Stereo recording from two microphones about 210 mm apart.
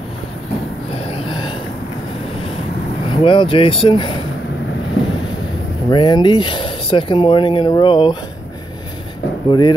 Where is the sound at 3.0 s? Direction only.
25° left (ahead or behind).